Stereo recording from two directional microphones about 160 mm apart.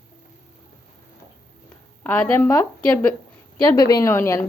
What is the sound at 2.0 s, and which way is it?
A woman's voice, 10° left (ahead or behind).